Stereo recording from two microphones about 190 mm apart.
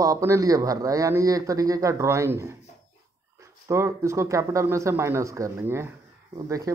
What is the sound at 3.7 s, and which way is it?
A man's voice, 15° right (ahead or behind).